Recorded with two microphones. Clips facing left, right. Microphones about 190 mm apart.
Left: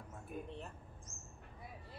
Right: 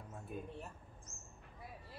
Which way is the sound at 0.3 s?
20° right (ahead or behind).